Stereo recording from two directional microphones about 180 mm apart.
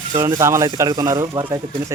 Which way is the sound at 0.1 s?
15° right (ahead or behind).